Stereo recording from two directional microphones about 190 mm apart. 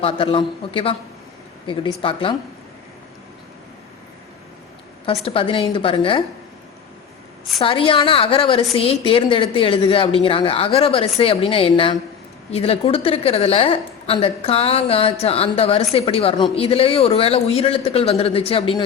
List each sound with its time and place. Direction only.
0.0 s a woman's voice: 30° left (ahead or behind)
5.0 s a woman's voice: 30° left (ahead or behind)
7.6 s a woman's voice: 30° left (ahead or behind)